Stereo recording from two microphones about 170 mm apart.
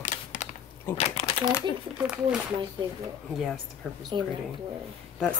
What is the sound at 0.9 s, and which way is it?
Crumpling, 35° left (ahead or behind).